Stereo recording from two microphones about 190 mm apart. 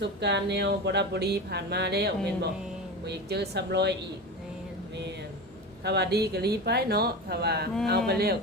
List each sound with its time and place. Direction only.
0.0 s speech: 65° right (ahead or behind)
5.8 s speech: 60° right (ahead or behind)